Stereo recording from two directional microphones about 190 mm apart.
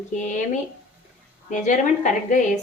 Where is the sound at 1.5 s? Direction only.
40° left (ahead or behind).